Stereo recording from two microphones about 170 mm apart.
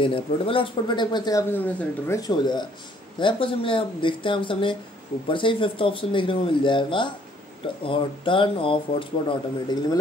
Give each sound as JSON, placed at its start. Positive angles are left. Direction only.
{"t": 0.0, "sound": "speech", "side_deg": 30}
{"t": 1.5, "sound": "speech", "side_deg": 15}